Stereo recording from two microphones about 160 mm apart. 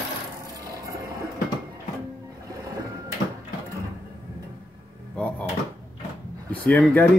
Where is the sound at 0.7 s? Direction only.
20° right (ahead or behind).